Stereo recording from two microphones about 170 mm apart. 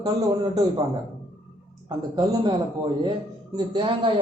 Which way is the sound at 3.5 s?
25° right (ahead or behind).